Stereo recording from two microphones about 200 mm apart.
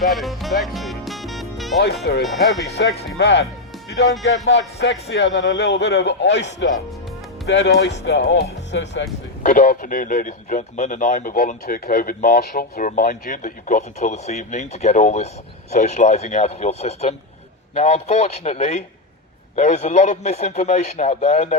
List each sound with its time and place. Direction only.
0.0 s music: centre (ahead or behind)
2.2 s speech: centre (ahead or behind)
2.6 s a man's voice: 55° left (ahead or behind)
4.4 s a man's voice: 60° left (ahead or behind)
9.4 s speech: 45° left (ahead or behind)